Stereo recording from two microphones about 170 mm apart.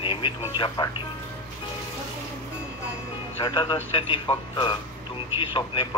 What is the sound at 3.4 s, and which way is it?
A man's voice, 30° left (ahead or behind).